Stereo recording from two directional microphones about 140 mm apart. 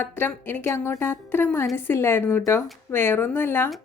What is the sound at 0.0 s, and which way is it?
A woman's voice, 15° left (ahead or behind).